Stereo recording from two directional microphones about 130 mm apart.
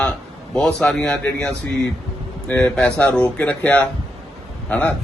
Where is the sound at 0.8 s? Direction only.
5° left (ahead or behind).